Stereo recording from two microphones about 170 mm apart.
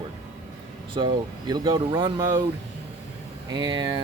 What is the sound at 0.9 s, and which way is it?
Speech, 25° right (ahead or behind).